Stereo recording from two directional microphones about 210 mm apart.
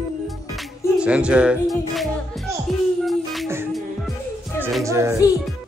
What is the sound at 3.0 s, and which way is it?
Music, centre (ahead or behind).